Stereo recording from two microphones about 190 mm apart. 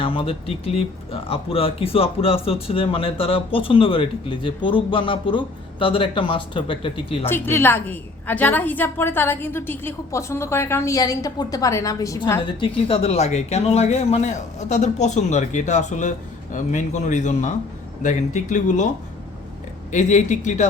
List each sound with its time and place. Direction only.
0.0 s a woman's voice: 30° left (ahead or behind)
7.3 s a woman's voice: 10° left (ahead or behind); by 18.9 s 40° left (ahead or behind)
19.9 s speech: 40° left (ahead or behind)